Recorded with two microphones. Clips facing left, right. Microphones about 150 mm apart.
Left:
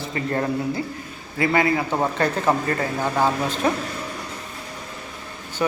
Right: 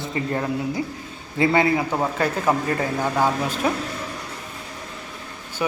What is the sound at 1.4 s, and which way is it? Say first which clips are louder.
Speech: right 1 dB; 25° right (ahead or behind).